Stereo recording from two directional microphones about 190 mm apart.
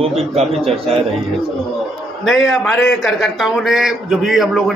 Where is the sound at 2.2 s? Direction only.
Centre (ahead or behind).